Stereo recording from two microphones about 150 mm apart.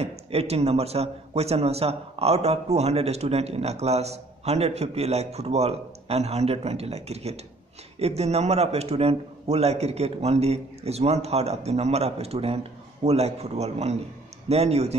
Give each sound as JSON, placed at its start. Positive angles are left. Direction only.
{"t": 0.0, "sound": "speech", "side_deg": -45}